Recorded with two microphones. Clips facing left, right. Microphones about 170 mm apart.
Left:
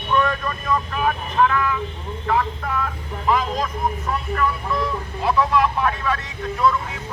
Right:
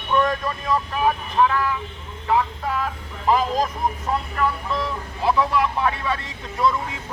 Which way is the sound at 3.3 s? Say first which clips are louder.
Right 2 dB; 25° right (ahead or behind).